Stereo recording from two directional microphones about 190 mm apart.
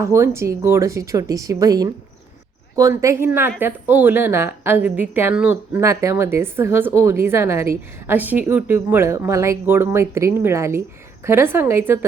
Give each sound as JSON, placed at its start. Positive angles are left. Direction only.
{"t": 0.0, "sound": "a woman's voice", "side_deg": -15}